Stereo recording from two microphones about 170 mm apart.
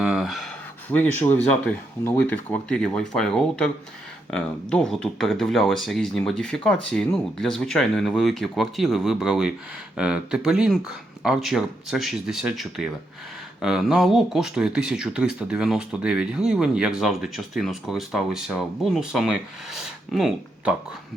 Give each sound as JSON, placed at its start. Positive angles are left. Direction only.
{"t": 0.0, "sound": "speech", "side_deg": 0}